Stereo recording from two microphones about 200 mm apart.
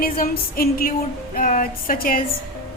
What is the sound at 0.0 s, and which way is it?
A woman's voice, 45° left (ahead or behind).